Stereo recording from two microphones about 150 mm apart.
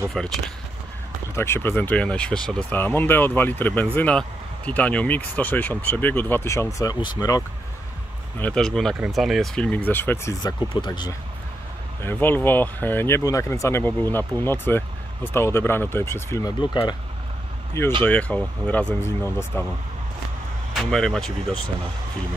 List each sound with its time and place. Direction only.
0.2 s speech: 5° left (ahead or behind)
1.3 s speech: 15° left (ahead or behind)
8.4 s speech: 5° left (ahead or behind)
10.4 s speech: 30° left (ahead or behind)
12.0 s speech: 15° left (ahead or behind)
18.0 s speech: 10° left (ahead or behind)
20.7 s speech: 5° left (ahead or behind)